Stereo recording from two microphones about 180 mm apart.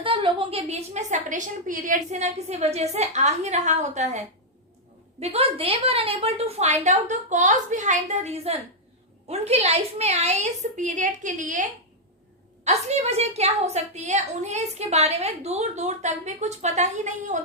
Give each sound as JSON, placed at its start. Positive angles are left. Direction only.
{"t": 0.0, "sound": "a woman's voice", "side_deg": -30}
{"t": 5.2, "sound": "a woman's voice", "side_deg": -35}
{"t": 12.6, "sound": "a woman's voice", "side_deg": -35}